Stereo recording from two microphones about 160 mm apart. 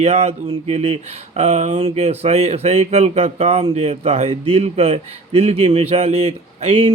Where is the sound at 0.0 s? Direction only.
40° right (ahead or behind).